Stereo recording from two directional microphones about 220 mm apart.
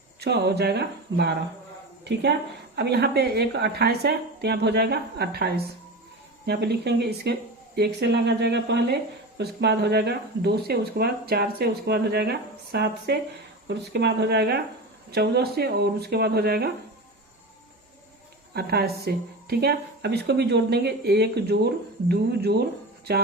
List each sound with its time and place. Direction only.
0.2 s speech: 50° right (ahead or behind)
2.7 s speech: 45° right (ahead or behind)
18.5 s speech: 45° right (ahead or behind)